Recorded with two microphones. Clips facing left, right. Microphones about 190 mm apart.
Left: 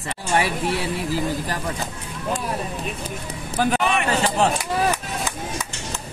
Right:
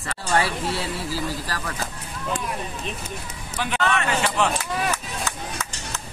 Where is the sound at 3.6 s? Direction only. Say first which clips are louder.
Left 3 dB; 40° left (ahead or behind).